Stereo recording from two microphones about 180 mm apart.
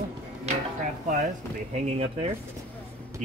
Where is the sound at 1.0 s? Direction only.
40° right (ahead or behind).